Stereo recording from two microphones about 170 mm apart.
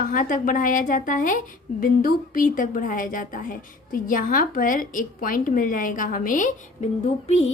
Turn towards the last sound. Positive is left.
turn(degrees=40)  # may be behind; listen again after turning